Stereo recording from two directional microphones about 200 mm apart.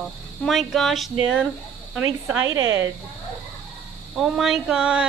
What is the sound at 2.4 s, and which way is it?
Speech, 75° right (ahead or behind).